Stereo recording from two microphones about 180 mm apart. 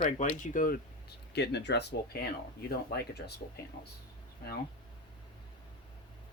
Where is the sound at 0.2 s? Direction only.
45° left (ahead or behind).